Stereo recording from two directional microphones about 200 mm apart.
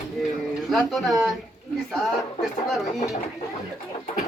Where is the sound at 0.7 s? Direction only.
Centre (ahead or behind).